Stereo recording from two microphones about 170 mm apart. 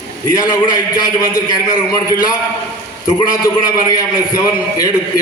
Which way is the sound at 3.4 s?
25° left (ahead or behind).